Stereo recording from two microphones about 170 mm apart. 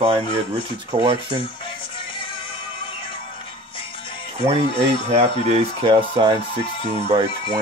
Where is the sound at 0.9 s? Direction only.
30° right (ahead or behind).